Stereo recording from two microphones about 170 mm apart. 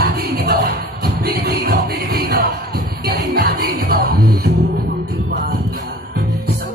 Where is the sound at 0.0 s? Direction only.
65° right (ahead or behind).